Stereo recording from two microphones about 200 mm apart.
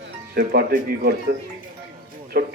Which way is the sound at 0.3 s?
50° right (ahead or behind).